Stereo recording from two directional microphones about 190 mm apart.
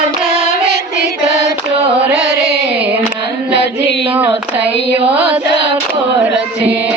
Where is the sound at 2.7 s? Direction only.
10° right (ahead or behind).